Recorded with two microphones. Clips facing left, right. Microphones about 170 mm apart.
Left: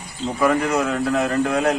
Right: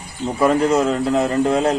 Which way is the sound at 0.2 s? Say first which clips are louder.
Right 3 dB; 20° right (ahead or behind).